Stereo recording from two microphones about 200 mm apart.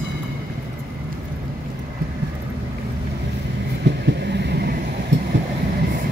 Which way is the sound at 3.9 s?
60° right (ahead or behind).